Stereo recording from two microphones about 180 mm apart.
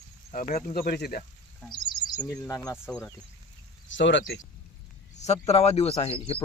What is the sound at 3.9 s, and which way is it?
Speech, 90° left.